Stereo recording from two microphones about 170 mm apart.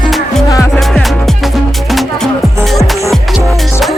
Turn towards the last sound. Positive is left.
turn(degrees=0)  # may be behind; listen again after turning